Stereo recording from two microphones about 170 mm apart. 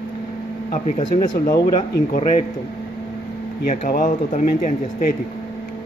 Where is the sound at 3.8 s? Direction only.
55° left (ahead or behind).